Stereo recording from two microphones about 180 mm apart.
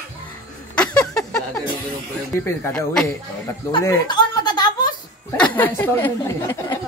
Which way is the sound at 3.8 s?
25° left (ahead or behind).